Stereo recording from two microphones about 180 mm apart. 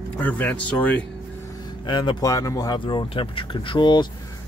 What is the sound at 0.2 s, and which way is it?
Speech, 10° left (ahead or behind).